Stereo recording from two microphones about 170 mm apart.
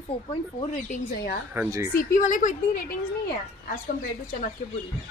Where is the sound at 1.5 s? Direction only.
10° right (ahead or behind).